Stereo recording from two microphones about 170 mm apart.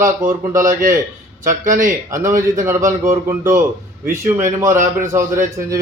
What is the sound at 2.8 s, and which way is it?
Speech, 50° right (ahead or behind).